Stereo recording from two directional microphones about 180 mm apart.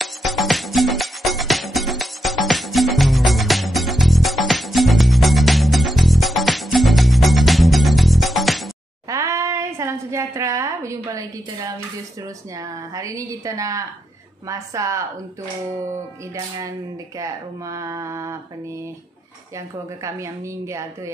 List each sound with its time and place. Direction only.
0.0 s music: centre (ahead or behind)
9.1 s a sound: 15° right (ahead or behind)
12.9 s a woman's voice: 20° right (ahead or behind)
20.0 s speech: 15° right (ahead or behind)